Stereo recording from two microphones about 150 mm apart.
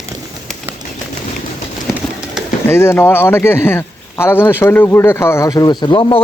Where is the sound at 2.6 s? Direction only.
15° left (ahead or behind); by 6.2 s 35° left (ahead or behind).